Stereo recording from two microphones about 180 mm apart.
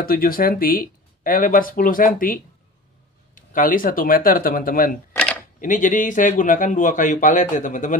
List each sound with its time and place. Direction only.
0.0 s speech: 55° left (ahead or behind)
5.1 s a sound: 5° left (ahead or behind)
5.6 s speech: 45° left (ahead or behind)